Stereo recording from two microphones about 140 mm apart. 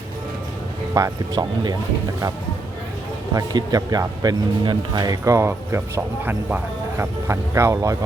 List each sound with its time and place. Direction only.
0.9 s speech: 25° right (ahead or behind)
3.3 s speech: 25° right (ahead or behind)